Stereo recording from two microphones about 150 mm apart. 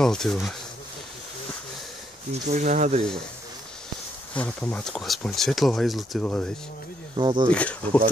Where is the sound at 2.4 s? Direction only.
50° right (ahead or behind).